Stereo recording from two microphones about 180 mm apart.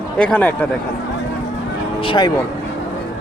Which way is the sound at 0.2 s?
5° left (ahead or behind).